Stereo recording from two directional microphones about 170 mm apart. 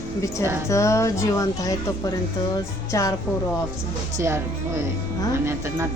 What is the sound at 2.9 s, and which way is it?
Speech, 20° left (ahead or behind).